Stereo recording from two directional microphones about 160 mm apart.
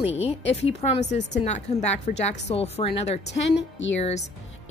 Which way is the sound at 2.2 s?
40° left (ahead or behind).